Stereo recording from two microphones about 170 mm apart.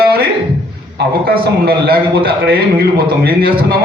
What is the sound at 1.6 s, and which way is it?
A man's voice, 65° right (ahead or behind).